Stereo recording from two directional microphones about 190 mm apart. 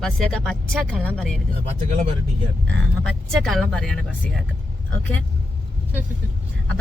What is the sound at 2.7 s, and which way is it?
Speech, 5° left (ahead or behind).